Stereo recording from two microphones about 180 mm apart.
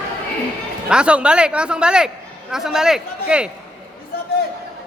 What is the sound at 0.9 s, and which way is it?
A man's voice, 5° right (ahead or behind).